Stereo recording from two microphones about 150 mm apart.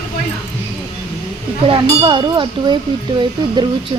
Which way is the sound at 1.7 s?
35° right (ahead or behind).